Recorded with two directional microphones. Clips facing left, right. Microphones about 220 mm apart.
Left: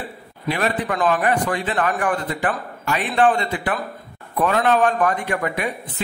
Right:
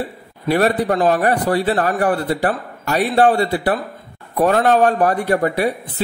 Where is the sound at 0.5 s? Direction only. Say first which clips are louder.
Right 6 dB; 40° right (ahead or behind).